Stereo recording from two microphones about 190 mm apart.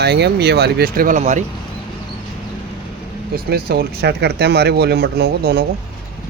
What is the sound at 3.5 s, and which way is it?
A man's voice, 55° right (ahead or behind).